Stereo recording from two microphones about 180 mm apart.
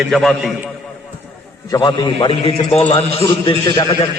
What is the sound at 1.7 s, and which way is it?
A man's voice, 25° left (ahead or behind).